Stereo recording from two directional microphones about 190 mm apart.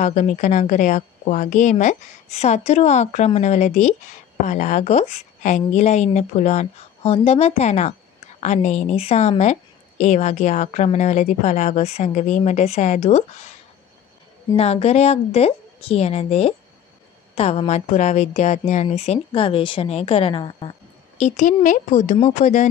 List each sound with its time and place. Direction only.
0.0 s a woman's voice: 40° left (ahead or behind)
14.6 s a woman's voice: 35° left (ahead or behind)
21.2 s a woman's voice: 40° left (ahead or behind)